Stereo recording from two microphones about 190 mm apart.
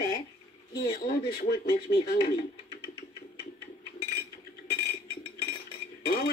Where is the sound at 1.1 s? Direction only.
60° left (ahead or behind).